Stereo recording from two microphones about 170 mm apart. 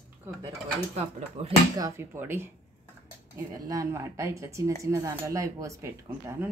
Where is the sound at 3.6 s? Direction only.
20° right (ahead or behind).